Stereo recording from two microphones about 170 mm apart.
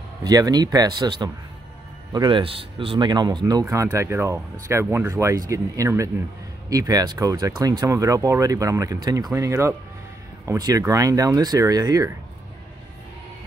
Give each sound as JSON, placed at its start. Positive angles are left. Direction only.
{"t": 0.2, "sound": "speech", "side_deg": -20}